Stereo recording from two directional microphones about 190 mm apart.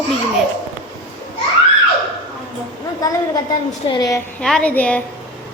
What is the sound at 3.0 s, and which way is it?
A woman's voice, 20° left (ahead or behind).